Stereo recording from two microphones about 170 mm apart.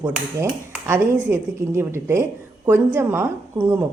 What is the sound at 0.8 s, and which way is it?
Speech, 15° right (ahead or behind).